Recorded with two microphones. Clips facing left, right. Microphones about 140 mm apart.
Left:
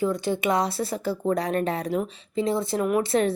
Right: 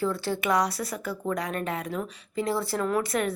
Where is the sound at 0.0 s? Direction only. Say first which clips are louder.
Left 3 dB; 20° left (ahead or behind).